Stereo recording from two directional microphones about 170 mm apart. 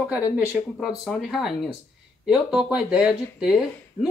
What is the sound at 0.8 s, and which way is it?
Speech, centre (ahead or behind).